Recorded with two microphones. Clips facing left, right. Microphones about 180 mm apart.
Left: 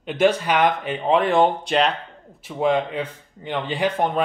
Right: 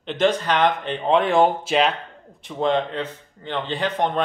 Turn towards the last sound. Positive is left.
turn(degrees=10)  # may be behind; listen again after turning